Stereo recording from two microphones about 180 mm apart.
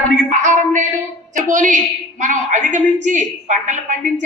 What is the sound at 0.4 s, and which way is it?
A woman's voice, 45° right (ahead or behind).